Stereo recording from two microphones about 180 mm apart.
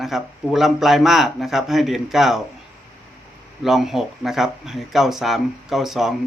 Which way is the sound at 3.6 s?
Centre (ahead or behind).